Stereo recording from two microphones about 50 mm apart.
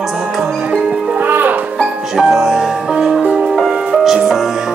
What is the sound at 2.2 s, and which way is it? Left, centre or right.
Music, centre.